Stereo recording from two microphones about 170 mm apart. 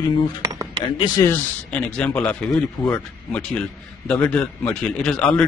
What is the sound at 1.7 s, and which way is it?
A man's voice, 5° left (ahead or behind).